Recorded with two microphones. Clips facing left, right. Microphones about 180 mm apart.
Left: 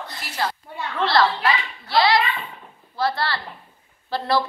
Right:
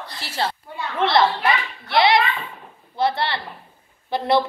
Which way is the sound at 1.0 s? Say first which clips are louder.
Right 1 dB; 20° right (ahead or behind).